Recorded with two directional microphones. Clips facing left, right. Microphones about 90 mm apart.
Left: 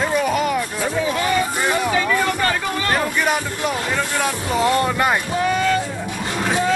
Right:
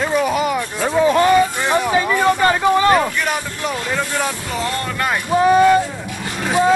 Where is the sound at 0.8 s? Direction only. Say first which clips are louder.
Right 10 dB; 40° right (ahead or behind).